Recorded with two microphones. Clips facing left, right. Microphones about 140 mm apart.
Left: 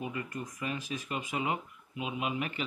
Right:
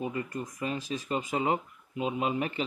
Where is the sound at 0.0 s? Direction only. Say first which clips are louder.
Right 4 dB; 30° right (ahead or behind).